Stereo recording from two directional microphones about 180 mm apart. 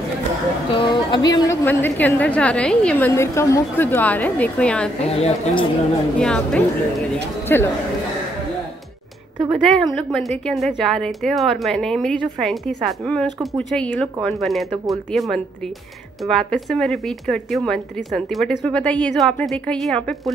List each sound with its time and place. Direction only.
0.7 s a woman's voice: 25° left (ahead or behind); by 4.9 s 5° left (ahead or behind)
5.0 s a woman's voice: 30° left (ahead or behind)
6.1 s a woman's voice: 5° left (ahead or behind)
9.5 s speech: centre (ahead or behind)